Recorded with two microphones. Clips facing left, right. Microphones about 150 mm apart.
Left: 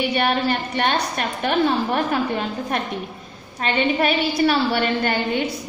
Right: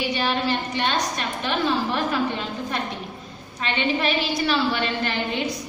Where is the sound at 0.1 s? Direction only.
55° left (ahead or behind).